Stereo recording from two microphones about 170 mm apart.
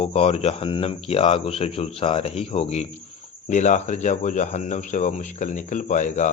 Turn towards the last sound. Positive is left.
turn(degrees=45)  # may be behind; listen again after turning